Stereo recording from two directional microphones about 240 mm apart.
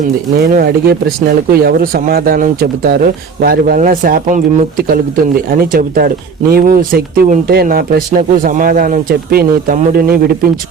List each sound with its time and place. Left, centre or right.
0.3 s speech: right